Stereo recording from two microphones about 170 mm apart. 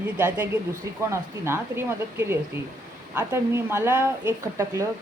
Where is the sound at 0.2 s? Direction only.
15° right (ahead or behind).